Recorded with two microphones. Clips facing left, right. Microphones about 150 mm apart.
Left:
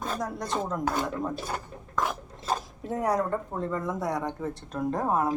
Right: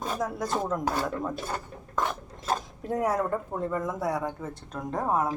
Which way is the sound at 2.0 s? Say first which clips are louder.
Even; centre (ahead or behind).